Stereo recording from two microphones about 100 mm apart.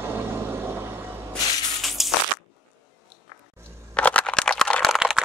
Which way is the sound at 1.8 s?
Centre (ahead or behind).